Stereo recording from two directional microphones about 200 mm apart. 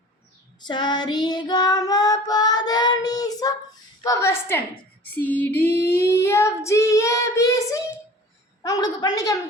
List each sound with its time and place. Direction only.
0.6 s child singing: 20° left (ahead or behind)